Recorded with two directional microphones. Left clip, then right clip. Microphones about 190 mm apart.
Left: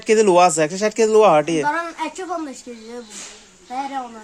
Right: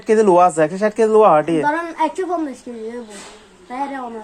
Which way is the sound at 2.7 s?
20° left (ahead or behind).